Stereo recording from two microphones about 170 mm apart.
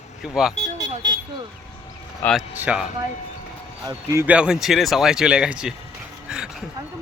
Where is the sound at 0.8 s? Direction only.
25° right (ahead or behind).